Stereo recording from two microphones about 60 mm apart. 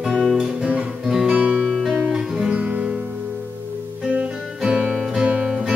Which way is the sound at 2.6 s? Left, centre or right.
Right.